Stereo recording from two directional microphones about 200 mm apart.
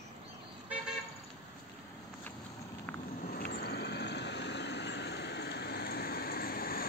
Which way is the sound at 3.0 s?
45° left (ahead or behind).